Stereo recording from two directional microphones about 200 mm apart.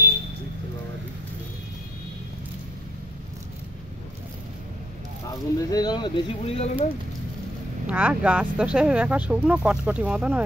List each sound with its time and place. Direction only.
5.6 s speech: 20° left (ahead or behind); by 6.9 s 35° left (ahead or behind)
7.8 s speech: 5° right (ahead or behind)